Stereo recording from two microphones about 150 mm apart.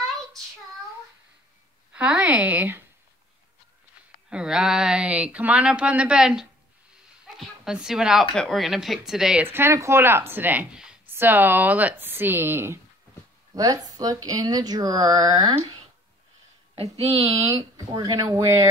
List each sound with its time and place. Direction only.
2.0 s speech: 10° right (ahead or behind)
4.3 s a woman's voice: 5° right (ahead or behind); by 15.5 s 25° right (ahead or behind)
16.7 s speech: 45° right (ahead or behind)
17.7 s speech: 25° right (ahead or behind)